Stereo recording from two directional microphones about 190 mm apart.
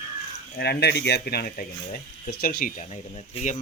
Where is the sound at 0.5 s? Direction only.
60° left (ahead or behind).